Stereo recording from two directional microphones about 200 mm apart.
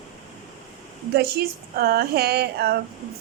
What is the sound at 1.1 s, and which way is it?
A woman's voice, 55° right (ahead or behind).